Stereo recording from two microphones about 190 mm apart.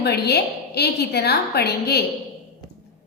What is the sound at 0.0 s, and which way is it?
A woman's voice, 60° left (ahead or behind).